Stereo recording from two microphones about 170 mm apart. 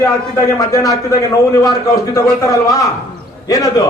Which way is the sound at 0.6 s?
20° left (ahead or behind).